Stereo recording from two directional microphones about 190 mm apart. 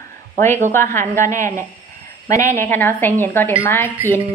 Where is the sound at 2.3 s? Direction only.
40° right (ahead or behind).